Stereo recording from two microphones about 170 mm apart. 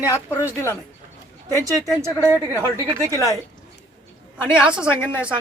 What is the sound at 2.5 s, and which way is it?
Speech, 15° left (ahead or behind).